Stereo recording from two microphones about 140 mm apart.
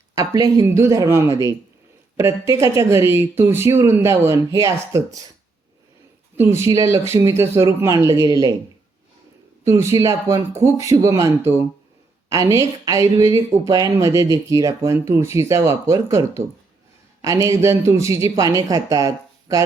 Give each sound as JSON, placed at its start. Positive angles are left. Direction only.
{"t": 0.1, "sound": "speech", "side_deg": -25}
{"t": 6.3, "sound": "speech", "side_deg": -20}
{"t": 9.6, "sound": "speech", "side_deg": -20}